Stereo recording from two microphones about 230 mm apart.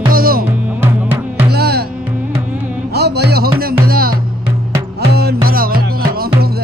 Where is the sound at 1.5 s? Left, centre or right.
Right.